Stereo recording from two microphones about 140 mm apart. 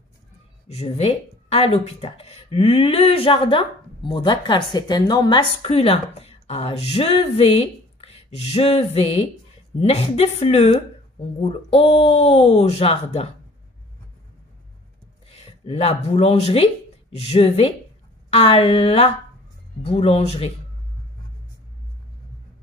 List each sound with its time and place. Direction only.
0.7 s speech: 50° left (ahead or behind)
15.2 s speech: 45° left (ahead or behind)